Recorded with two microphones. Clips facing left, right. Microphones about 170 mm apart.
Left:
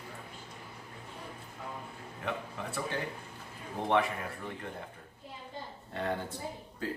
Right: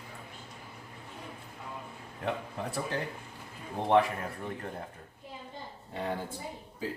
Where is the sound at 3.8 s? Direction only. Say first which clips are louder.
Right 2 dB; 30° right (ahead or behind).